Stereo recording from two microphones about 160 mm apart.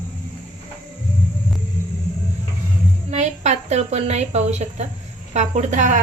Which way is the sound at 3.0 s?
45° right (ahead or behind).